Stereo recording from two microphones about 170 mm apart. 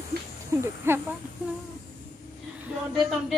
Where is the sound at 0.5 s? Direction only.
15° right (ahead or behind).